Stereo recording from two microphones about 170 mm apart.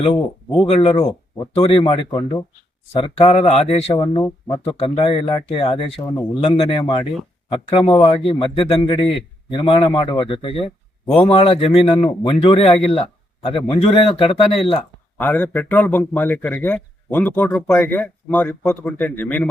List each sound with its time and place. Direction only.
0.0 s a man's voice: 30° left (ahead or behind)
3.2 s a man's voice: 35° left (ahead or behind)
4.2 s a man's voice: 15° left (ahead or behind)
4.7 s a man's voice: 30° left (ahead or behind)
6.0 s a man's voice: 20° left (ahead or behind)
15.2 s a man's voice: 10° left (ahead or behind)